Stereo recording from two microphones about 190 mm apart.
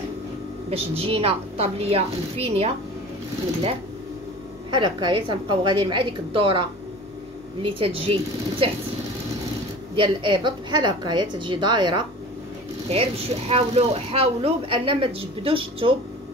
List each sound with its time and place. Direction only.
0.7 s a woman's voice: 30° right (ahead or behind)
4.6 s speech: 25° right (ahead or behind)
7.6 s speech: 30° right (ahead or behind)
9.9 s speech: 25° right (ahead or behind)
13.5 s speech: 30° right (ahead or behind)